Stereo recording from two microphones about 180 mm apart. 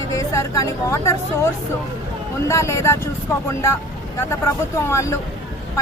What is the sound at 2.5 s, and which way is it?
A woman's voice, 15° left (ahead or behind).